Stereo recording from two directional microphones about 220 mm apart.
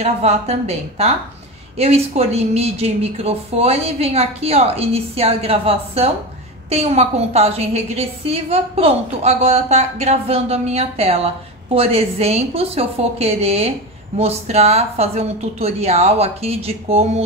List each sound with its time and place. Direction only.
0.0 s a woman's voice: 30° right (ahead or behind)